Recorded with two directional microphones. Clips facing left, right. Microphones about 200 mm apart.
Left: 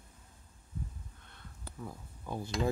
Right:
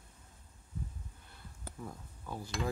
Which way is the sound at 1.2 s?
5° right (ahead or behind).